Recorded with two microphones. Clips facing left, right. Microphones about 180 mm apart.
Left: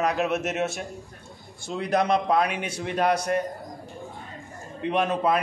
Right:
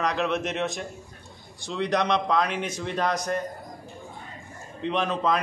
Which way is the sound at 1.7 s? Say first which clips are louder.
Right 1 dB; 45° left (ahead or behind).